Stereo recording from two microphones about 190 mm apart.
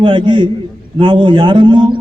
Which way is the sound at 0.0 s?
25° right (ahead or behind).